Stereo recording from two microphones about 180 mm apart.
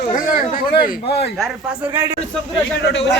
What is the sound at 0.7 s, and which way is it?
Speech, 60° left (ahead or behind).